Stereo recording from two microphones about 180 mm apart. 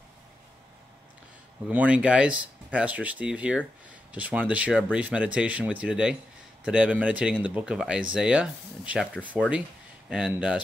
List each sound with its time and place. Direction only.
1.7 s speech: 10° right (ahead or behind)